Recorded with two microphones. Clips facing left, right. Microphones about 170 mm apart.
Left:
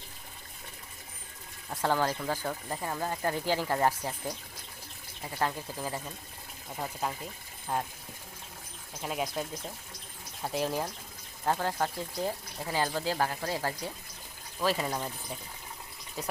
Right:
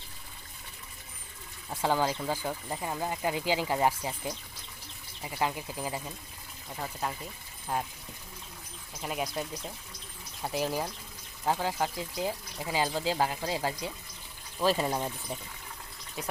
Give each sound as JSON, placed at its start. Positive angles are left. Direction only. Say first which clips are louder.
{"t": 1.7, "sound": "speech", "louder": "even", "side_deg": -10}
{"t": 6.7, "sound": "speech", "louder": "left 1 dB", "side_deg": 5}
{"t": 9.0, "sound": "speech", "louder": "even", "side_deg": 0}
{"t": 14.7, "sound": "speech", "louder": "right 3 dB", "side_deg": -30}